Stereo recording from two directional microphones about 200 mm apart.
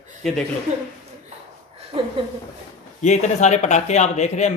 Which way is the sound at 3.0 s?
35° left (ahead or behind).